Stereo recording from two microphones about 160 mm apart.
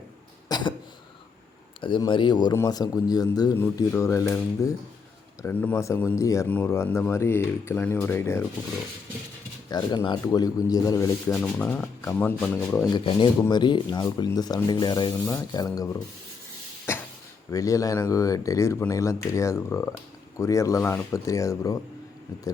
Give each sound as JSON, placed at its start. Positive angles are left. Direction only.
{"t": 0.4, "sound": "cough", "side_deg": 25}
{"t": 1.8, "sound": "a man's voice", "side_deg": 30}
{"t": 9.6, "sound": "a man's voice", "side_deg": 25}
{"t": 11.4, "sound": "speech", "side_deg": 10}
{"t": 12.9, "sound": "a man's voice", "side_deg": 30}
{"t": 16.9, "sound": "a sound", "side_deg": 15}
{"t": 17.5, "sound": "a man's voice", "side_deg": 20}